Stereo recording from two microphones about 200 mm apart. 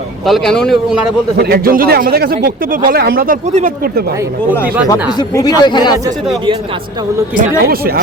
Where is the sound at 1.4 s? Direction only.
50° right (ahead or behind).